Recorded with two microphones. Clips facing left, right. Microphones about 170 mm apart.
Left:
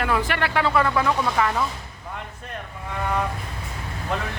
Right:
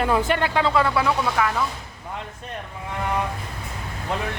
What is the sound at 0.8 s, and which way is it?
Speech, 10° right (ahead or behind).